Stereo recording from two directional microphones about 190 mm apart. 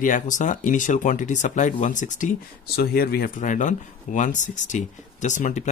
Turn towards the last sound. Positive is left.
turn(degrees=40)  # may be behind; listen again after turning